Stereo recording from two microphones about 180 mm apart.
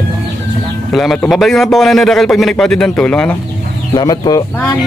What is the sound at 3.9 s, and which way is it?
Speech, 25° left (ahead or behind).